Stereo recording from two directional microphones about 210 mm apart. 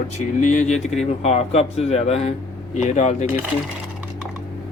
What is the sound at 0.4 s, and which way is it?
Speech, 35° left (ahead or behind).